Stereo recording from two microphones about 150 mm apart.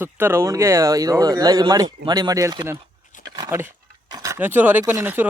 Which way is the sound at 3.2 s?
25° right (ahead or behind).